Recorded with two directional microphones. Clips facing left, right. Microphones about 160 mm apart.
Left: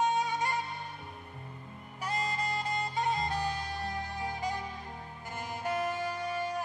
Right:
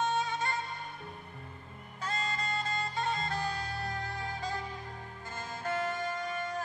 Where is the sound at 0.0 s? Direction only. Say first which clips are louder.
Left 2 dB; 15° left (ahead or behind).